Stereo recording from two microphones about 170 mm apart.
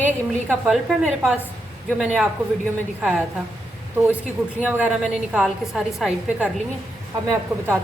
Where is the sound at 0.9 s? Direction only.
Centre (ahead or behind).